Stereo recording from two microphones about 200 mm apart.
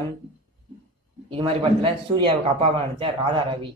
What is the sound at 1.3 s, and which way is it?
A man's voice, 25° right (ahead or behind).